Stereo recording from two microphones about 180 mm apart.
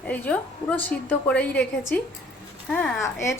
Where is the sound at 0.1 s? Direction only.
10° left (ahead or behind).